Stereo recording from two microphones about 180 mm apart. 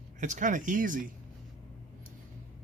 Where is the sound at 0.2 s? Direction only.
45° right (ahead or behind).